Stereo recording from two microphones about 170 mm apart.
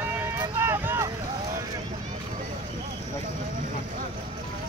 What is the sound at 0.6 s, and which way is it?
Vehicle, 15° right (ahead or behind).